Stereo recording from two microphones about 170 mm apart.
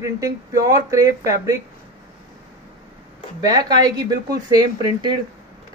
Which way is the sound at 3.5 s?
25° right (ahead or behind).